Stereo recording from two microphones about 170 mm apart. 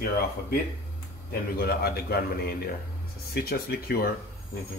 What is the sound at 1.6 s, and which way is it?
Speech, 65° left (ahead or behind).